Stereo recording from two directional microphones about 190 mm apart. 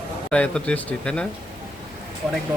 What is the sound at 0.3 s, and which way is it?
Speech, 5° left (ahead or behind).